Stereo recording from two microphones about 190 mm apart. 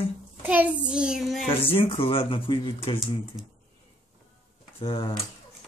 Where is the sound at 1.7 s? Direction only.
30° left (ahead or behind).